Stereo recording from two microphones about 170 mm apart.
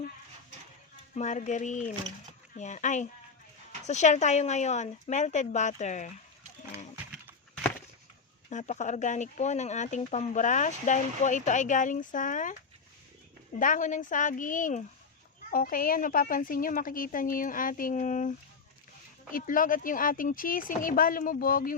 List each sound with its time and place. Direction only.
1.1 s speech: 45° left (ahead or behind)
8.4 s speech: 45° left (ahead or behind)
13.6 s speech: 50° left (ahead or behind)
15.4 s a woman's voice: 55° left (ahead or behind)